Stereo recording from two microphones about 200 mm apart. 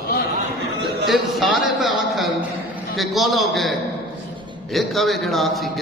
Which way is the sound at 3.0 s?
Centre (ahead or behind).